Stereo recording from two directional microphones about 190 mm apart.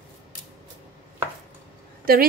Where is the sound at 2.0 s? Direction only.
50° right (ahead or behind).